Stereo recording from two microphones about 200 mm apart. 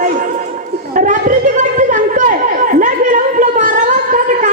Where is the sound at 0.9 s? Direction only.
40° right (ahead or behind).